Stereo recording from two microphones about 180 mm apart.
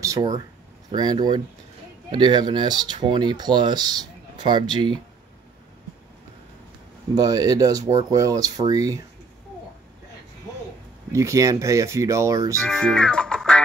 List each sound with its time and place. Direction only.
0.0 s speech: 20° right (ahead or behind)
7.2 s speech: 20° right (ahead or behind)
11.1 s speech: 15° right (ahead or behind)
12.5 s music: 5° left (ahead or behind)